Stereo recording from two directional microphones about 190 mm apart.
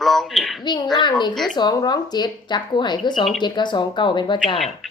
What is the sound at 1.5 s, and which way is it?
A woman's voice, 20° left (ahead or behind).